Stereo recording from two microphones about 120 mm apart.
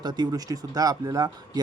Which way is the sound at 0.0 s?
35° right (ahead or behind).